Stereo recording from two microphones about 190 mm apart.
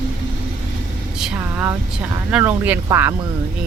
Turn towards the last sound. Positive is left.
turn(degrees=-10)  # may be behind; listen again after turning